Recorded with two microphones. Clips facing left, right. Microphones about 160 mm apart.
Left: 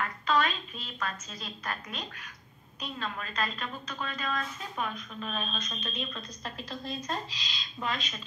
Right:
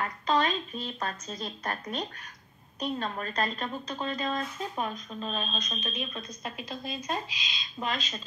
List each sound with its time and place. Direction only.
0.0 s a woman's voice: 30° right (ahead or behind)